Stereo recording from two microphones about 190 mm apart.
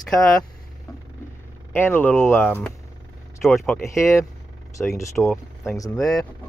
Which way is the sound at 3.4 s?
Centre (ahead or behind).